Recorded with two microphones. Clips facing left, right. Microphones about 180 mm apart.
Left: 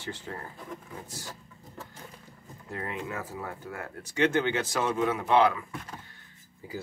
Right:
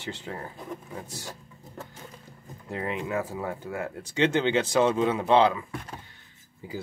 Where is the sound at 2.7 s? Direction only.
20° right (ahead or behind).